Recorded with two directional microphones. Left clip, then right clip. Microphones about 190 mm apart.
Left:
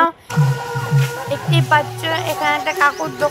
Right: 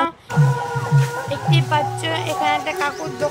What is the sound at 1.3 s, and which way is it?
Speech, 20° left (ahead or behind).